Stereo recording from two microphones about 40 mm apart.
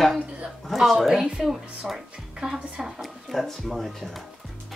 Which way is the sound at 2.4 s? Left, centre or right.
Right.